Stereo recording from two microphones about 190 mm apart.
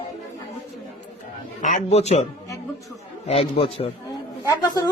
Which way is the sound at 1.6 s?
35° left (ahead or behind).